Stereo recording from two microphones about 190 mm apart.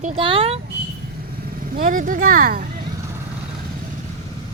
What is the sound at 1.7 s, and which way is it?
Speech, 45° right (ahead or behind).